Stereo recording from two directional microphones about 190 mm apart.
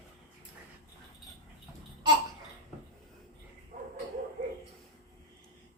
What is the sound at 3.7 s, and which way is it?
Bow-wow, 35° right (ahead or behind).